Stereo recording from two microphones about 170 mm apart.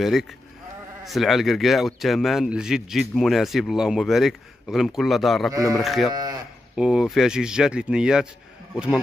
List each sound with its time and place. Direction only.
0.0 s speech: centre (ahead or behind)
5.5 s speech: 20° right (ahead or behind)
5.8 s speech: centre (ahead or behind)
6.1 s speech: 25° right (ahead or behind)
6.7 s speech: 5° right (ahead or behind)